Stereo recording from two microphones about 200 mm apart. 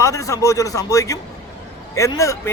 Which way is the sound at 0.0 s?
15° left (ahead or behind).